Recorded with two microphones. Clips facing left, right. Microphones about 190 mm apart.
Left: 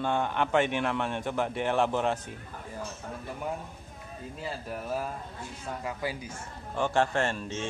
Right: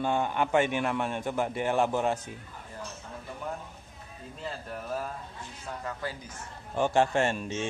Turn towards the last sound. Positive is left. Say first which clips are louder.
# right 2 dB
turn(degrees=-15)  # may be behind; listen again after turning